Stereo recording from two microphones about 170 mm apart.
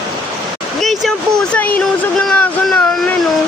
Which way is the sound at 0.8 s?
Centre (ahead or behind).